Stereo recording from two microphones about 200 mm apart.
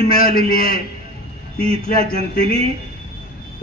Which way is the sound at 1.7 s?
30° right (ahead or behind).